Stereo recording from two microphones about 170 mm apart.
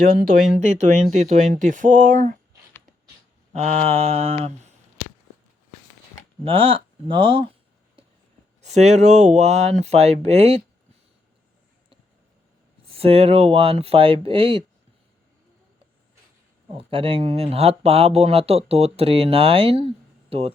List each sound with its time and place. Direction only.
0.0 s speech: 55° right (ahead or behind)
0.6 s speech: 45° right (ahead or behind)
3.5 s speech: 40° right (ahead or behind)
6.4 s speech: 30° right (ahead or behind)
8.6 s speech: 45° right (ahead or behind)
12.9 s speech: 35° right (ahead or behind)
16.7 s speech: 30° right (ahead or behind)